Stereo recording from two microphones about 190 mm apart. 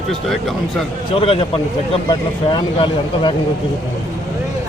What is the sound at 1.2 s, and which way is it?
Speech, 30° left (ahead or behind).